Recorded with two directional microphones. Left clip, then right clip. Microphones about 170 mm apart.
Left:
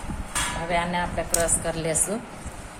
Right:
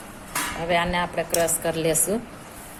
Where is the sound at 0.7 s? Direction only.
45° right (ahead or behind).